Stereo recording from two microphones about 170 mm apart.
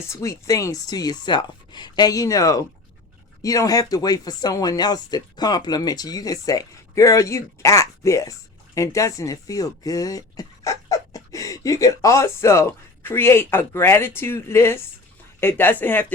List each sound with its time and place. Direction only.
0.1 s speech: 20° left (ahead or behind)